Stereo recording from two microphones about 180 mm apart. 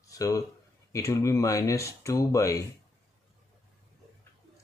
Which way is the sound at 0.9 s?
15° left (ahead or behind).